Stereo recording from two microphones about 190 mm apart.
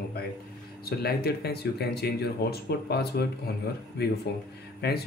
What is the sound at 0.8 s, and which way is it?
Speech, 55° left (ahead or behind).